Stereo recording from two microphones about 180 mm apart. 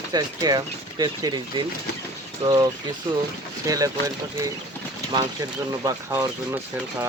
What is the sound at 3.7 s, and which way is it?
Speech, 20° right (ahead or behind).